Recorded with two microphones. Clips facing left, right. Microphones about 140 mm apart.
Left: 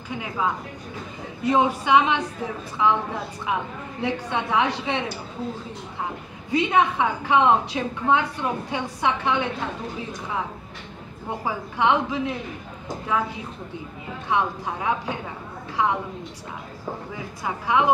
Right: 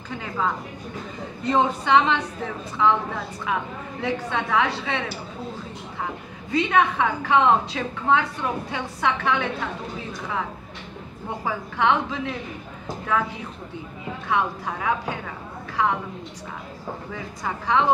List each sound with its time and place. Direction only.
0.1 s a woman's voice: 10° left (ahead or behind)
6.5 s a woman's voice: 15° left (ahead or behind)
11.2 s a woman's voice: 15° left (ahead or behind)
14.3 s a woman's voice: 20° left (ahead or behind)
17.1 s a woman's voice: 10° left (ahead or behind)